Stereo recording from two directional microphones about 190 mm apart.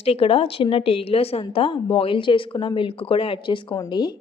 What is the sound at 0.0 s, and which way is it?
A woman's voice, 30° left (ahead or behind).